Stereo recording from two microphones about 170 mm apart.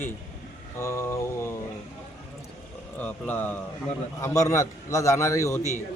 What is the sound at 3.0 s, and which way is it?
A man's voice, 10° left (ahead or behind).